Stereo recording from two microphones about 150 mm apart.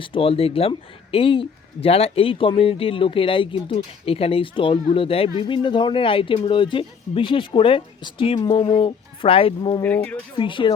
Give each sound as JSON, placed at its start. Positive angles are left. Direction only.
{"t": 0.0, "sound": "speech", "side_deg": 35}
{"t": 8.6, "sound": "speech", "side_deg": 40}
{"t": 9.8, "sound": "speech", "side_deg": 10}
{"t": 10.3, "sound": "speech", "side_deg": 35}